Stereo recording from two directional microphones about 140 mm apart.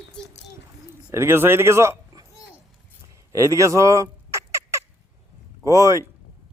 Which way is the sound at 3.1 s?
20° right (ahead or behind).